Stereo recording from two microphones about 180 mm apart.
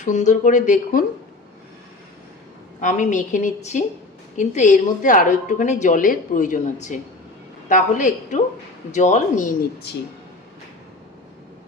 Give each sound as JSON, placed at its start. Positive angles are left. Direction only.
{"t": 0.0, "sound": "a woman's voice", "side_deg": 40}
{"t": 2.8, "sound": "a woman's voice", "side_deg": 45}
{"t": 9.9, "sound": "speech", "side_deg": 65}